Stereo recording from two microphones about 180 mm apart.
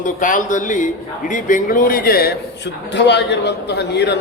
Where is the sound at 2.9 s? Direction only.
75° left (ahead or behind).